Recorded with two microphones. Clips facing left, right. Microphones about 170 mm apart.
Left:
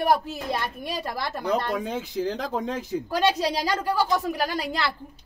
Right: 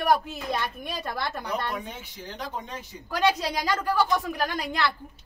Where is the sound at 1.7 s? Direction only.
90° left.